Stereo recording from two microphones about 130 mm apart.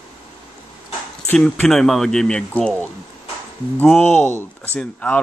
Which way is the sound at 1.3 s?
5° left (ahead or behind).